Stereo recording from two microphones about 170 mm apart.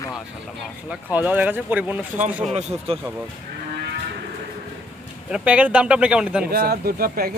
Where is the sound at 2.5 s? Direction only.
40° right (ahead or behind).